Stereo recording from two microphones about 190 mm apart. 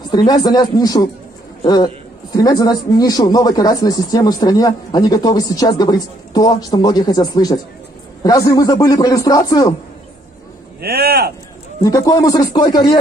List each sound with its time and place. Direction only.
0.1 s a man's voice: 20° left (ahead or behind)
10.8 s speech: 55° right (ahead or behind)
11.8 s speech: 15° left (ahead or behind)